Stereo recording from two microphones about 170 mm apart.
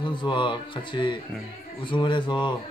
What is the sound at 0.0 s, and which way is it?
Speech, 30° left (ahead or behind).